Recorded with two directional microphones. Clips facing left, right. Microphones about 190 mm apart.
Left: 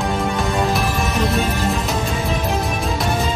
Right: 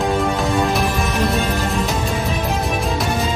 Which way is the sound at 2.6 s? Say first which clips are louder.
Right 1 dB; centre (ahead or behind).